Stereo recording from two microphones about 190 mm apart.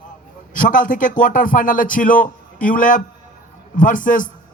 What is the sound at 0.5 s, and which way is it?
A man's voice, 45° left (ahead or behind).